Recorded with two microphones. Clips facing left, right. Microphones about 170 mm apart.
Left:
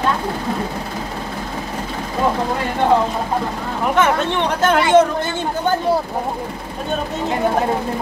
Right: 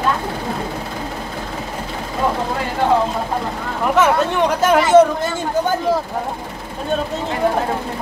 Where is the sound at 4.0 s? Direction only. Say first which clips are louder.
Right 2 dB; 5° right (ahead or behind).